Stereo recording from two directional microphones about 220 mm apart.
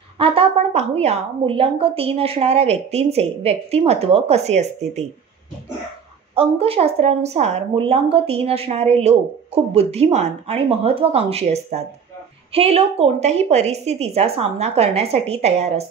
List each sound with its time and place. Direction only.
0.2 s a woman's voice: 25° right (ahead or behind)
6.3 s a woman's voice: 25° right (ahead or behind)